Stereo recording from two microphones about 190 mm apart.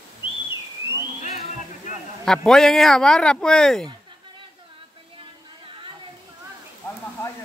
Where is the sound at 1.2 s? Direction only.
40° left (ahead or behind).